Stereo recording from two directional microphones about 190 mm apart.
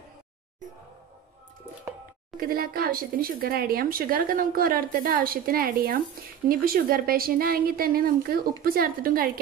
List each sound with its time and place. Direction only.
2.4 s speech: 50° right (ahead or behind)